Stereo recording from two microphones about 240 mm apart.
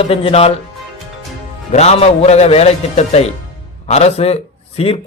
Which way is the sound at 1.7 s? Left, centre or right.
Left.